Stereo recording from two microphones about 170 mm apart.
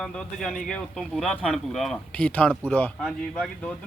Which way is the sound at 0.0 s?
5° left (ahead or behind).